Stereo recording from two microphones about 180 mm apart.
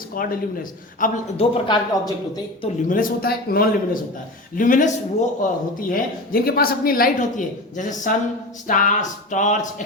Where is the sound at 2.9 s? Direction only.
55° left (ahead or behind).